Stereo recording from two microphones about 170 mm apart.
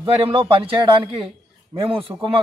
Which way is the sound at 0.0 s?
30° right (ahead or behind).